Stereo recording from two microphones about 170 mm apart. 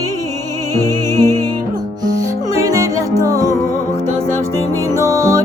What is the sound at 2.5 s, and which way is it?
Music, 20° right (ahead or behind).